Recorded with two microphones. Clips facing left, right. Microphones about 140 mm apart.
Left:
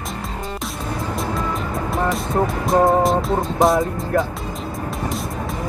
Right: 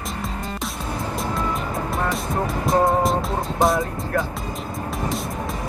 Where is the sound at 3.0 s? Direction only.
Centre (ahead or behind).